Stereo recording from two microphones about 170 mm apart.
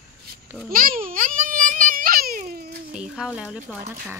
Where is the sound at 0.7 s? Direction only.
60° right (ahead or behind).